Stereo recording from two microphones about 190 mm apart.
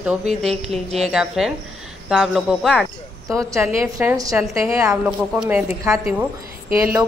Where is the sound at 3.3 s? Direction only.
15° right (ahead or behind).